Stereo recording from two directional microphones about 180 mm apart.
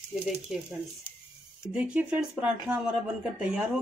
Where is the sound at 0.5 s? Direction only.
5° right (ahead or behind).